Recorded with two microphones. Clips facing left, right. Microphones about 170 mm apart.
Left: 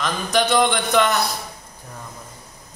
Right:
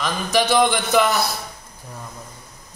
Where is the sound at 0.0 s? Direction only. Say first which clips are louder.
Even; centre (ahead or behind).